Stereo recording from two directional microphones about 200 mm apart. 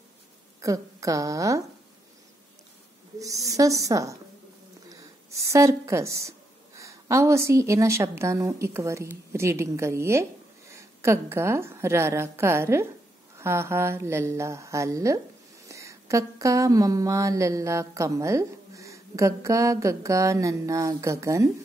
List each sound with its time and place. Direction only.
0.6 s speech: 15° right (ahead or behind)
3.2 s speech: 15° right (ahead or behind)